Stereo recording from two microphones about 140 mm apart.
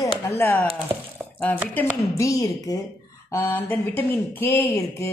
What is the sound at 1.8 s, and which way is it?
Speech, 15° left (ahead or behind).